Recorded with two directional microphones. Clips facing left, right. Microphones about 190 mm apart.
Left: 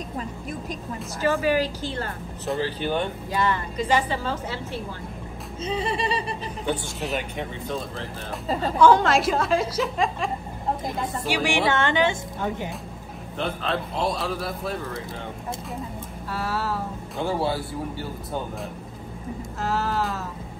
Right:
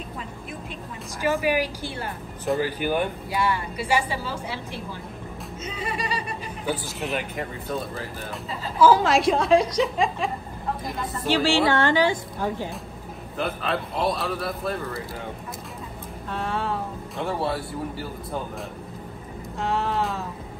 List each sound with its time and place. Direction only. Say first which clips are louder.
1.2 s a woman's voice: left 1 dB; 15° right (ahead or behind)
5.7 s music: left 5 dB; 30° left (ahead or behind)
6.7 s a woman's voice: even; 5° right (ahead or behind)
11.2 s a woman's voice: right 3 dB; 15° left (ahead or behind)
13.4 s a woman's voice: even; centre (ahead or behind)
16.3 s a woman's voice: even; 5° left (ahead or behind)
19.6 s music: right 1 dB; centre (ahead or behind)